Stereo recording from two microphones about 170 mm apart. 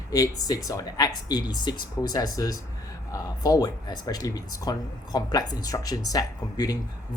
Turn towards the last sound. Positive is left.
turn(degrees=20)  # may be behind; listen again after turning